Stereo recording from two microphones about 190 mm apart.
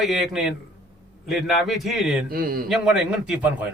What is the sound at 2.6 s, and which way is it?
A man's voice, 5° right (ahead or behind).